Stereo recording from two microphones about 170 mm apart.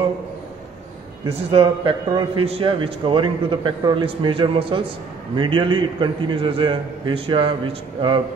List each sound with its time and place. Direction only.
1.5 s a man's voice: 30° right (ahead or behind)